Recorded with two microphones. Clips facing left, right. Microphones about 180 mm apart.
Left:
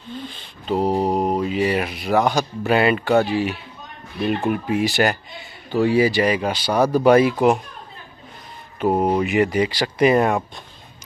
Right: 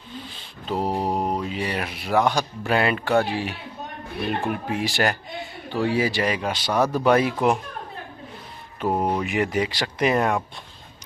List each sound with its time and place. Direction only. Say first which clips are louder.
0.1 s speech: left 5 dB; centre (ahead or behind)
4.3 s speech: left 5 dB; 60° left (ahead or behind)
4.7 s speech: left 4 dB; centre (ahead or behind)
8.8 s speech: left 5 dB; 10° left (ahead or behind)